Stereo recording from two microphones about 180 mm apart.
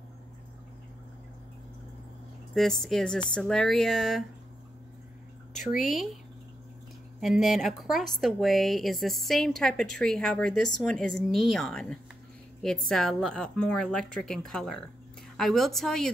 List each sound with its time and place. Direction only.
2.5 s a woman's voice: centre (ahead or behind)
5.8 s a woman's voice: centre (ahead or behind)
7.2 s a woman's voice: centre (ahead or behind)